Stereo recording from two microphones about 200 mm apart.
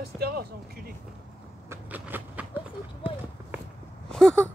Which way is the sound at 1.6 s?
10° right (ahead or behind).